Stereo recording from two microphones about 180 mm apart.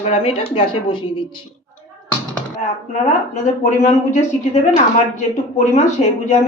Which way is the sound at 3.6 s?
40° left (ahead or behind).